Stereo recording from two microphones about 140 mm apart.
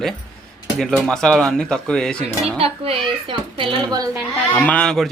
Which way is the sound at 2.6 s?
40° right (ahead or behind).